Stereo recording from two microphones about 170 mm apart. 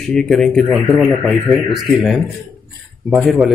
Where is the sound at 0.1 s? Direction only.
5° left (ahead or behind).